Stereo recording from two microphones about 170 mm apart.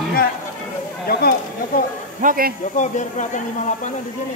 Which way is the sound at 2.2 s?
55° right (ahead or behind).